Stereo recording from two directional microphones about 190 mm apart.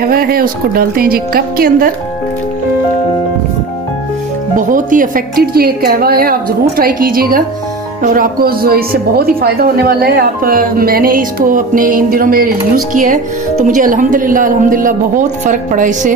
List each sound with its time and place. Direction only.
0.1 s speech: 50° right (ahead or behind)
4.6 s speech: 45° right (ahead or behind)